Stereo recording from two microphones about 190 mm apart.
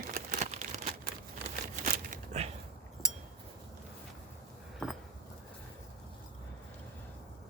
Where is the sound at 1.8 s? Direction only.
40° right (ahead or behind).